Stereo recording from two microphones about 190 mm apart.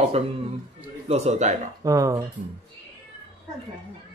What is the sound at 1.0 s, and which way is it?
Speech, 35° right (ahead or behind).